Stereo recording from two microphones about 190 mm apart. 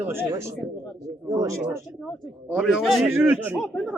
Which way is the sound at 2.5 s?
Centre (ahead or behind).